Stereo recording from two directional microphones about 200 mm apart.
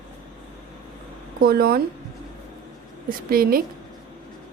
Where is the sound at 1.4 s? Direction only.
50° right (ahead or behind).